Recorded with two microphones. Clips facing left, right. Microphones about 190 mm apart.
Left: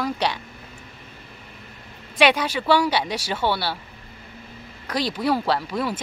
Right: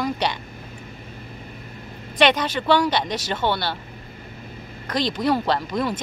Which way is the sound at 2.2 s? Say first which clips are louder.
Even; 10° left (ahead or behind).